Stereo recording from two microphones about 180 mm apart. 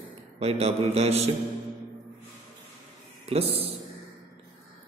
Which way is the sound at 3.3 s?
35° right (ahead or behind).